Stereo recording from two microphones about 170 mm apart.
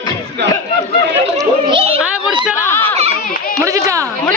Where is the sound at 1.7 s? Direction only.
35° right (ahead or behind).